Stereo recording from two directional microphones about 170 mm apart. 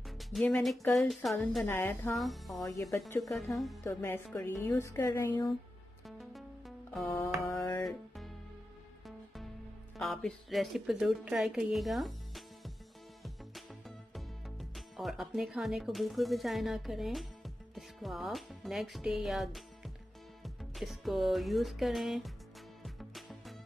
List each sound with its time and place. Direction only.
0.2 s a woman's voice: centre (ahead or behind)
2.1 s speech: centre (ahead or behind)
2.6 s speech: 20° left (ahead or behind)
3.2 s speech: centre (ahead or behind)
3.8 s a woman's voice: 15° left (ahead or behind)
6.0 s music: centre (ahead or behind)
9.9 s a woman's voice: centre (ahead or behind)
13.2 s music: centre (ahead or behind)
20.4 s speech: centre (ahead or behind)
22.8 s music: centre (ahead or behind)